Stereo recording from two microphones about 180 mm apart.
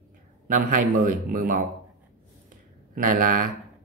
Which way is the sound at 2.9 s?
50° right (ahead or behind).